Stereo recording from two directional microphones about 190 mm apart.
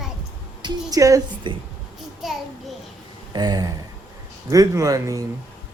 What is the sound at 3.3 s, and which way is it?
A woman's voice, 20° right (ahead or behind).